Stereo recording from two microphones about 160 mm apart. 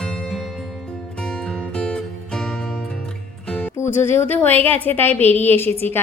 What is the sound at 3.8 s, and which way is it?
A woman's voice, 15° left (ahead or behind).